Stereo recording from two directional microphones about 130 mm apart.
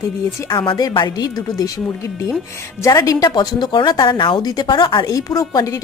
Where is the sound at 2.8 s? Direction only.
25° left (ahead or behind).